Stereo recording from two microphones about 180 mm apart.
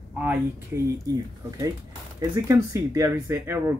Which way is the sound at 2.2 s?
15° right (ahead or behind).